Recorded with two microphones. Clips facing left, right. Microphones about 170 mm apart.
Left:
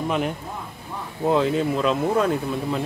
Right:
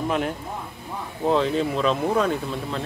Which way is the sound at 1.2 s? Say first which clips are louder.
Left 1 dB; 5° left (ahead or behind).